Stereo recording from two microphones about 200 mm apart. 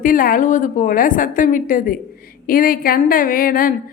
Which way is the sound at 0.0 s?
45° left (ahead or behind).